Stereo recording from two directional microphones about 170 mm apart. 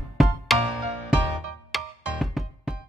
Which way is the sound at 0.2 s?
Centre (ahead or behind).